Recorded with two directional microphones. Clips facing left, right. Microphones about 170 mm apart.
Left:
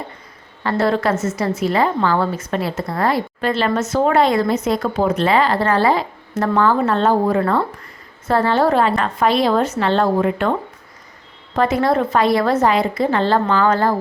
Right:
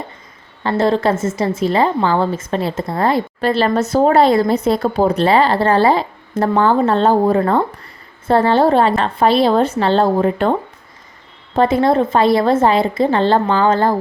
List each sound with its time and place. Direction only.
0.6 s a woman's voice: 25° right (ahead or behind)
11.5 s a woman's voice: 25° right (ahead or behind)